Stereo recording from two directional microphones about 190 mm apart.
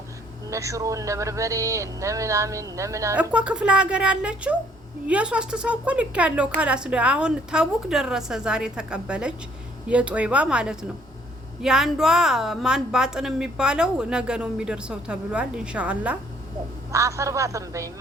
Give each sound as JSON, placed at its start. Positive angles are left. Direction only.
{"t": 0.5, "sound": "a woman's voice", "side_deg": -15}